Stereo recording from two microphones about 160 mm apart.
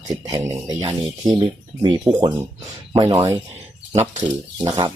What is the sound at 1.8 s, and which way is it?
Speech, 25° right (ahead or behind).